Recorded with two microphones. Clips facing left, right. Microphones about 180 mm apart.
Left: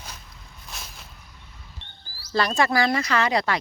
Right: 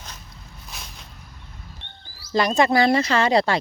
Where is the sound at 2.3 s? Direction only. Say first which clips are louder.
Right 4 dB; 15° right (ahead or behind).